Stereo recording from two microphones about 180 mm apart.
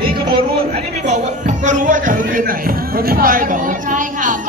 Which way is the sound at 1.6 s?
45° right (ahead or behind).